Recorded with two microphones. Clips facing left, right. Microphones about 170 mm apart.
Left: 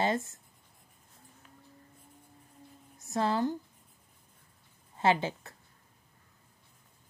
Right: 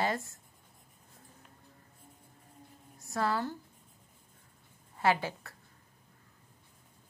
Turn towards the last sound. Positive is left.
turn(degrees=20)  # may be behind; listen again after turning